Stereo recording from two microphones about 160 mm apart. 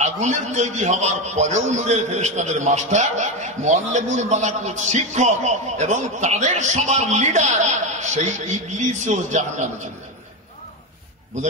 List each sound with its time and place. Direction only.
0.0 s a man's voice: 45° right (ahead or behind)